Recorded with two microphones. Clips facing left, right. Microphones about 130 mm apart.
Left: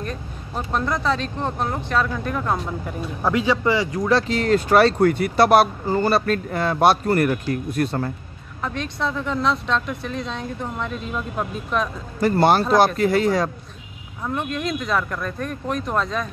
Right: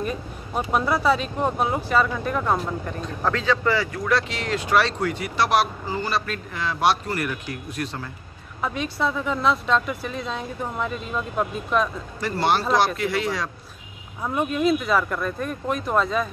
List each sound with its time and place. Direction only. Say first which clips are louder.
0.0 s speech: right 2 dB; 10° right (ahead or behind)
3.3 s speech: left 3 dB; 15° left (ahead or behind)
4.1 s speech: left 6 dB; 40° left (ahead or behind)
8.5 s speech: right 1 dB; 5° right (ahead or behind)
12.2 s speech: left 6 dB; 45° left (ahead or behind)
14.2 s speech: right 3 dB; 10° right (ahead or behind)